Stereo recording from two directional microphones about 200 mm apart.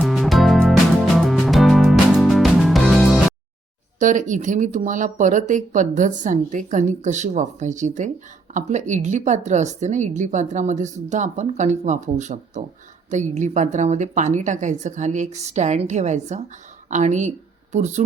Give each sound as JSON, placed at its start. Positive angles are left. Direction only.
{"t": 0.0, "sound": "music", "side_deg": 0}
{"t": 4.0, "sound": "a woman's voice", "side_deg": -40}